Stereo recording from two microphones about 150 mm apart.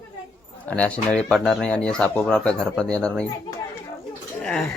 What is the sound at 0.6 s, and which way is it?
Speech, 10° left (ahead or behind).